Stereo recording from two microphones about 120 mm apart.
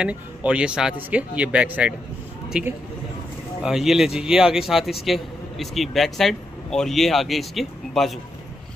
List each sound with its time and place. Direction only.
0.0 s speech: 10° right (ahead or behind)